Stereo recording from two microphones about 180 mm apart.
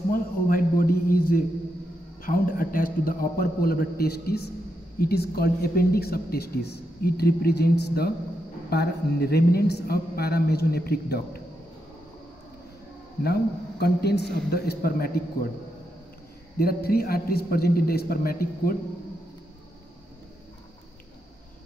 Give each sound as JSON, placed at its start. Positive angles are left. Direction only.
{"t": 0.1, "sound": "a sound", "side_deg": 50}
{"t": 2.2, "sound": "a man's voice", "side_deg": 50}
{"t": 13.2, "sound": "speech", "side_deg": 60}
{"t": 16.5, "sound": "speech", "side_deg": 55}